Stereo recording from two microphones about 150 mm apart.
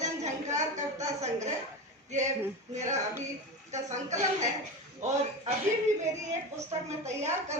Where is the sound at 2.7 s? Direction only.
50° right (ahead or behind).